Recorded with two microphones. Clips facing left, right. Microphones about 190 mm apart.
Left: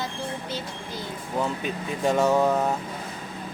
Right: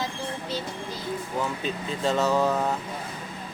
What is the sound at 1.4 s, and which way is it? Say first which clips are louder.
Speech: left 1 dB; 15° left (ahead or behind).